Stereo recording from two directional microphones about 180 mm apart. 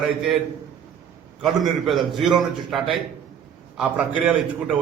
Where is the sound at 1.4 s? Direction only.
Centre (ahead or behind).